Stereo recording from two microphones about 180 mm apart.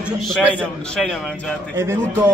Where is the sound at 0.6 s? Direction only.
5° left (ahead or behind).